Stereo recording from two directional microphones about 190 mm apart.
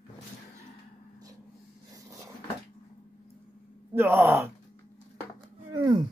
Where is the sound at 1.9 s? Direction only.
15° right (ahead or behind).